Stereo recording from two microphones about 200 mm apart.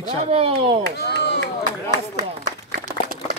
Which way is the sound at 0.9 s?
55° left (ahead or behind).